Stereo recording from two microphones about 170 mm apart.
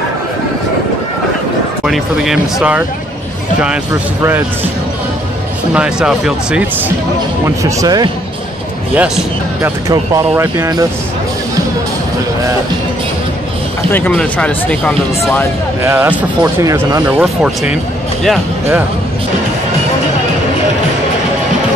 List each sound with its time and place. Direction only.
1.9 s speech: 5° right (ahead or behind)
5.7 s speech: 5° right (ahead or behind)
7.4 s speech: 20° right (ahead or behind)
8.9 s speech: 10° right (ahead or behind)
13.9 s speech: 10° left (ahead or behind)
15.8 s speech: 15° right (ahead or behind)
17.2 s speech: 5° right (ahead or behind)